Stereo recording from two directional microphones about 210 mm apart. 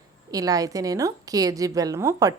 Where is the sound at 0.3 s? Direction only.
15° right (ahead or behind).